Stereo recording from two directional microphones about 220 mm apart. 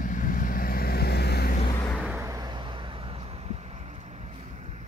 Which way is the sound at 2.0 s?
10° right (ahead or behind).